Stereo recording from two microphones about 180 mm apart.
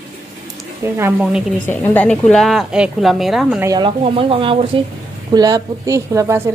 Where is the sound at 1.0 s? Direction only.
10° right (ahead or behind).